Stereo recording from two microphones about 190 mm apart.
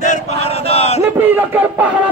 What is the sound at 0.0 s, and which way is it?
Chant, 35° left (ahead or behind).